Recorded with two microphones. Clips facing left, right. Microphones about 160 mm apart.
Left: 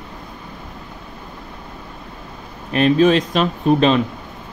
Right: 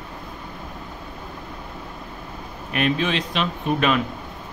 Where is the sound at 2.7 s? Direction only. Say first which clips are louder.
Left 9 dB; 35° left (ahead or behind).